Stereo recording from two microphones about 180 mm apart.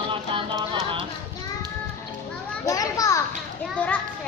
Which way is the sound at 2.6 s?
20° left (ahead or behind).